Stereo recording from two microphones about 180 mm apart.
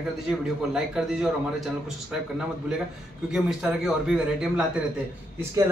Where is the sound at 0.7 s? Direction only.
5° right (ahead or behind).